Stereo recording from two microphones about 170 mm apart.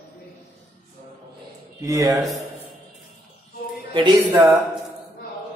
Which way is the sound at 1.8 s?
20° right (ahead or behind).